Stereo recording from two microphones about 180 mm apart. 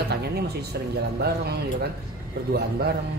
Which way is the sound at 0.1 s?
65° right (ahead or behind).